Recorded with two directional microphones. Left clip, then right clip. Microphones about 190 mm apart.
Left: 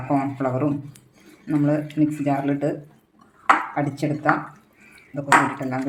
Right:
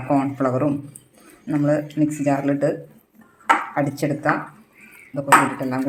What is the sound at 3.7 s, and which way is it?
Speech, 15° right (ahead or behind).